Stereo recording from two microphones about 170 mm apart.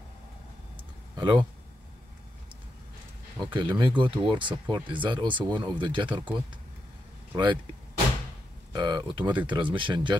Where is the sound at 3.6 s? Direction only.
30° right (ahead or behind).